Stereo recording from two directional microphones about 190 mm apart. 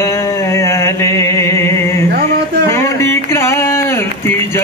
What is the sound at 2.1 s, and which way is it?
Male singing, 55° right (ahead or behind).